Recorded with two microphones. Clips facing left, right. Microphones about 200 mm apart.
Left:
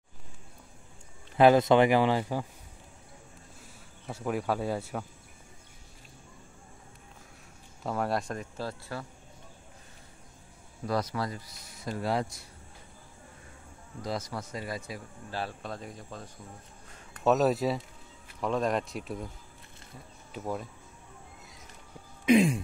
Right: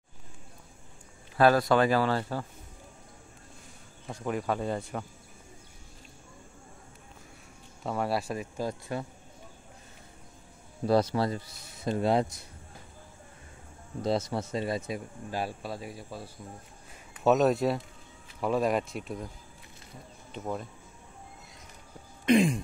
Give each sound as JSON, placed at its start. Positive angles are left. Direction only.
{"t": 1.3, "sound": "speech", "side_deg": 20}
{"t": 4.1, "sound": "speech", "side_deg": 5}
{"t": 7.8, "sound": "speech", "side_deg": 0}
{"t": 10.9, "sound": "speech", "side_deg": -30}
{"t": 14.0, "sound": "speech", "side_deg": -25}
{"t": 20.3, "sound": "speech", "side_deg": 5}
{"t": 22.2, "sound": "a sound", "side_deg": 5}